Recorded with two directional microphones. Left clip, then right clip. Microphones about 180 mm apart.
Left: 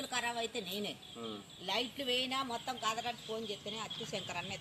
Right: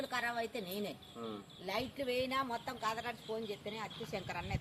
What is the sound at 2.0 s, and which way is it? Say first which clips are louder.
Speech: left 1 dB; 55° right (ahead or behind).